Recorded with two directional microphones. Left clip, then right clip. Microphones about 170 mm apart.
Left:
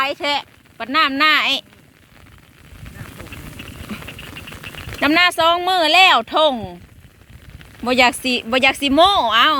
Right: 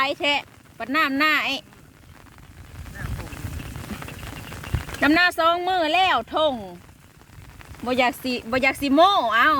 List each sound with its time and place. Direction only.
0.0 s speech: centre (ahead or behind)
4.9 s speech: 5° left (ahead or behind); by 6.7 s 25° left (ahead or behind)
7.9 s speech: 20° left (ahead or behind)